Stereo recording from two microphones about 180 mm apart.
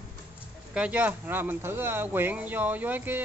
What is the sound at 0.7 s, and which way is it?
Speech, 5° right (ahead or behind).